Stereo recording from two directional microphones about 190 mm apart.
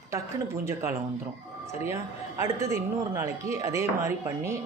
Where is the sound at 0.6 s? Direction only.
15° right (ahead or behind).